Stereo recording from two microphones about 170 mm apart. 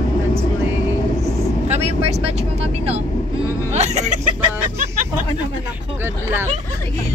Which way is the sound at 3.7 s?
40° right (ahead or behind).